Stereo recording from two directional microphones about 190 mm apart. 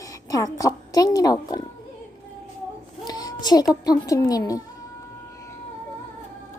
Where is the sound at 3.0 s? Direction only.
20° left (ahead or behind).